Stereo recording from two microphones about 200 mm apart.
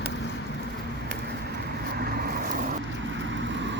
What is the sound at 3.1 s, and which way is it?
Vehicle, 65° right (ahead or behind).